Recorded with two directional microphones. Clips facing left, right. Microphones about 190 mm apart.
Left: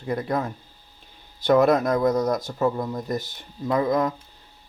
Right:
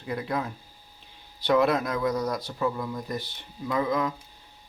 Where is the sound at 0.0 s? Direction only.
45° left (ahead or behind).